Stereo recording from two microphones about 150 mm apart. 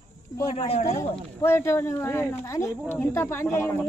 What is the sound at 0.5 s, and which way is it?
Speech, 45° left (ahead or behind).